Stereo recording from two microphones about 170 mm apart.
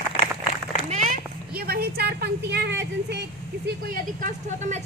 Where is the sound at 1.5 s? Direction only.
65° right (ahead or behind); by 3.2 s 85° right.